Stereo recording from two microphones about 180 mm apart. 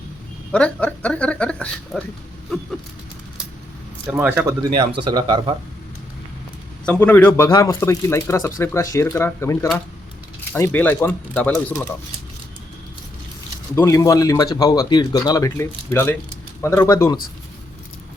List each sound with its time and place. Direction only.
0.5 s speech: 5° left (ahead or behind)
4.1 s speech: 10° right (ahead or behind)
4.8 s speech: 25° right (ahead or behind)
6.8 s speech: 10° left (ahead or behind)
13.7 s speech: 15° left (ahead or behind)